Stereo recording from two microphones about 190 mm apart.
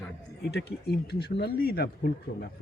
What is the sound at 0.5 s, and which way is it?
Speech, 60° left (ahead or behind).